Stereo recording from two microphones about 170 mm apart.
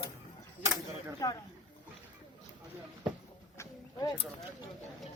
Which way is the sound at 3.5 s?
20° left (ahead or behind).